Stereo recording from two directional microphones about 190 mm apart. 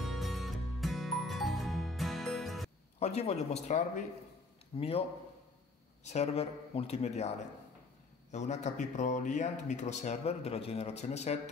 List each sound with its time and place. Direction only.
0.0 s music: centre (ahead or behind)
3.0 s speech: 35° left (ahead or behind)
6.0 s speech: 35° left (ahead or behind)